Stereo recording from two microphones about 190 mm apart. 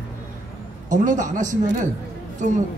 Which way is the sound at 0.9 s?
40° right (ahead or behind).